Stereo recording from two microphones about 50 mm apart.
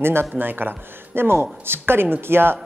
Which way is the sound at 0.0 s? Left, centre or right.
Right.